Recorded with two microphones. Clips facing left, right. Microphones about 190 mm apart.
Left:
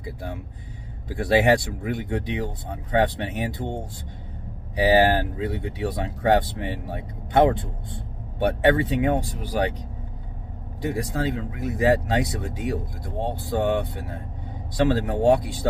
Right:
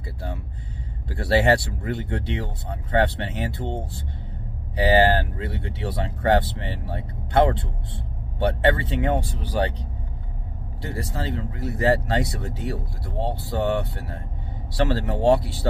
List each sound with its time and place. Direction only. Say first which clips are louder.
0.0 s a sound: left 1 dB; 15° left (ahead or behind)
1.2 s speech: left 1 dB; 15° left (ahead or behind)
4.7 s speech: even; 10° left (ahead or behind)
10.8 s speech: left 5 dB; 15° left (ahead or behind)